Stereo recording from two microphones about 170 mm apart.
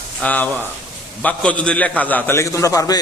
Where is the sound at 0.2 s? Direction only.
10° left (ahead or behind).